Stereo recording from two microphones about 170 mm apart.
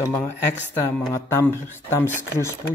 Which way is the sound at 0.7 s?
15° left (ahead or behind).